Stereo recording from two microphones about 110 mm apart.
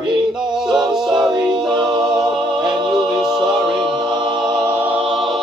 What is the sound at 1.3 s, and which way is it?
Music, 40° right (ahead or behind).